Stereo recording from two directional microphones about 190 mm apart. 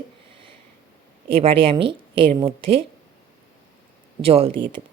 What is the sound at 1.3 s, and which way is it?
A woman's voice, 30° right (ahead or behind).